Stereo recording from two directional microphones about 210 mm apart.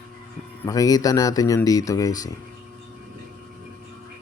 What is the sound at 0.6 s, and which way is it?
Speech, 15° left (ahead or behind).